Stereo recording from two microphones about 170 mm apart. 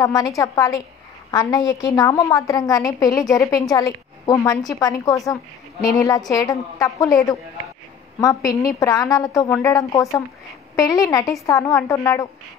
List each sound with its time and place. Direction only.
0.0 s a woman's voice: 20° left (ahead or behind)